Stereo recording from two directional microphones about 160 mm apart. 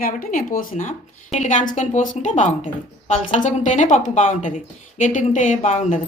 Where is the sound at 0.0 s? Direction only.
55° left (ahead or behind).